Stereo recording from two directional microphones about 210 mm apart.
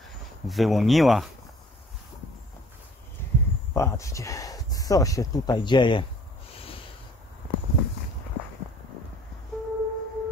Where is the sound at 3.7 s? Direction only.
15° left (ahead or behind).